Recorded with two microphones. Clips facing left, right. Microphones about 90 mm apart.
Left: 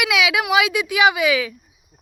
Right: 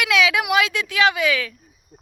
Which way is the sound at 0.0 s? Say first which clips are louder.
Even; 10° left (ahead or behind).